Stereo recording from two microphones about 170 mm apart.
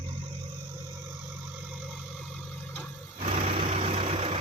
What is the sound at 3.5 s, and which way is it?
Vehicle, 40° right (ahead or behind).